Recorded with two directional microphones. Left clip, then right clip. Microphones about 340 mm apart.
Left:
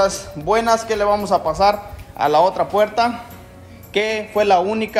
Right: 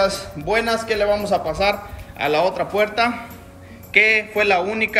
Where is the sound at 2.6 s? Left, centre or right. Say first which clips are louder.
Left 4 dB; left.